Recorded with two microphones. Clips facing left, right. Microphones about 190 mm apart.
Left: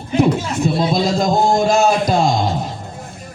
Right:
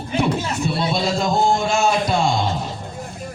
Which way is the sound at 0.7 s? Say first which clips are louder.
Left 4 dB; 40° left (ahead or behind).